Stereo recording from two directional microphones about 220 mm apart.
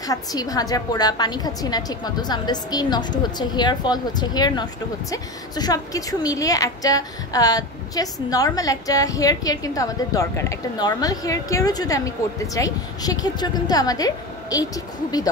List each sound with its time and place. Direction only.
0.0 s a woman's voice: 15° left (ahead or behind)